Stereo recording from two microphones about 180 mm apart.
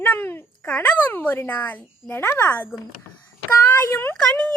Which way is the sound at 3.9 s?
10° left (ahead or behind).